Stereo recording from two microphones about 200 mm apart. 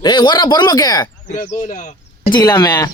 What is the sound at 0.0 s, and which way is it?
A man's voice, 20° left (ahead or behind).